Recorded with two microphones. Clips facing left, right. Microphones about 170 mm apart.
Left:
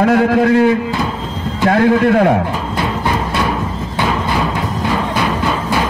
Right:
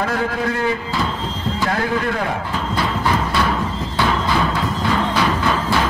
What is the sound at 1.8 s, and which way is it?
Speech, 60° left (ahead or behind).